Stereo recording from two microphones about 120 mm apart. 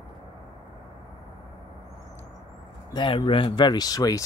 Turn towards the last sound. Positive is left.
turn(degrees=30)  # may be behind; listen again after turning